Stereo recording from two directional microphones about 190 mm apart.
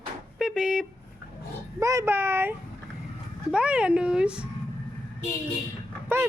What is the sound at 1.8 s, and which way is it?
Speech, 15° right (ahead or behind).